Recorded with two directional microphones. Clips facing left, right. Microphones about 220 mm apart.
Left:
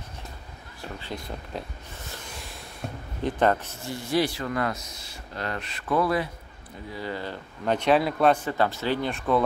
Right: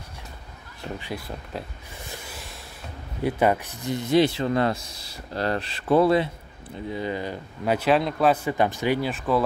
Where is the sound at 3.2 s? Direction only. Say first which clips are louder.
Right 1 dB; 10° right (ahead or behind).